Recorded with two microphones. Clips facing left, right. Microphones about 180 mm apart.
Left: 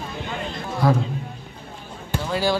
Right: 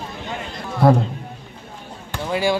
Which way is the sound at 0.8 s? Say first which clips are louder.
Right 5 dB; 60° right (ahead or behind).